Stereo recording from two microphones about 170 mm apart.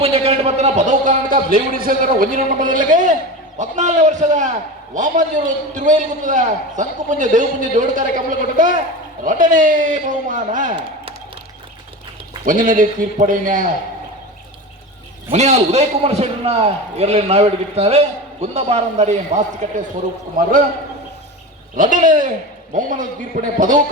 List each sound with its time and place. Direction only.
0.0 s a man's voice: 35° right (ahead or behind)
12.5 s a man's voice: 50° right (ahead or behind)
15.3 s a man's voice: 40° right (ahead or behind)
20.3 s a man's voice: 55° right (ahead or behind)
21.8 s a man's voice: 50° right (ahead or behind)